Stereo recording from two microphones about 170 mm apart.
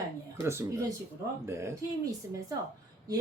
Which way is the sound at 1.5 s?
15° right (ahead or behind).